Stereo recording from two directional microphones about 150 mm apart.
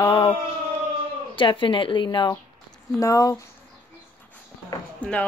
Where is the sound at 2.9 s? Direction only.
20° left (ahead or behind).